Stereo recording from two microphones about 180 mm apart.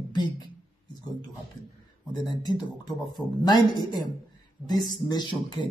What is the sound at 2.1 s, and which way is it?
Speech, 25° left (ahead or behind).